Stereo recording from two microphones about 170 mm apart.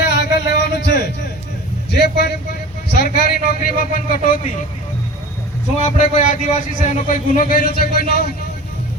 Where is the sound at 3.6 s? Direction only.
50° left (ahead or behind).